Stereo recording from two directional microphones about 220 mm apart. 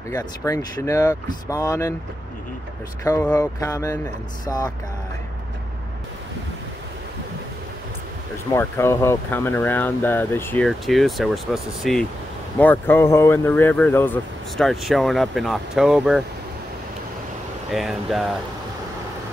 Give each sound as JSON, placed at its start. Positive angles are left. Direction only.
{"t": 0.1, "sound": "speech", "side_deg": 15}
{"t": 3.0, "sound": "speech", "side_deg": 10}
{"t": 8.5, "sound": "speech", "side_deg": 10}
{"t": 17.6, "sound": "speech", "side_deg": 0}